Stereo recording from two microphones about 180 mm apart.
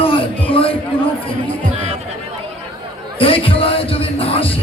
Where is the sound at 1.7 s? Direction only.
40° right (ahead or behind).